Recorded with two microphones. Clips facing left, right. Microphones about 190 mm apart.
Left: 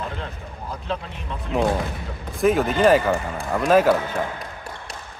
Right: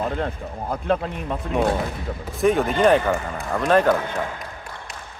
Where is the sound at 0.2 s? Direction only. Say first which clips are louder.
Right 7 dB; 55° right (ahead or behind).